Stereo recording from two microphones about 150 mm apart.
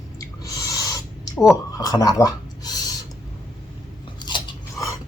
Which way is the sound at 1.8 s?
25° left (ahead or behind).